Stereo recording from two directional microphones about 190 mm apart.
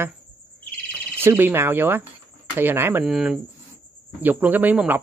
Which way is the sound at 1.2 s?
10° right (ahead or behind).